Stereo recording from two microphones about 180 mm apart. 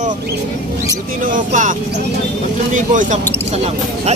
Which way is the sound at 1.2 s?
45° right (ahead or behind).